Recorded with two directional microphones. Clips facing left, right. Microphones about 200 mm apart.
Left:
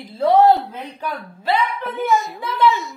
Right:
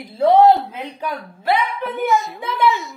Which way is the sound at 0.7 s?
15° right (ahead or behind).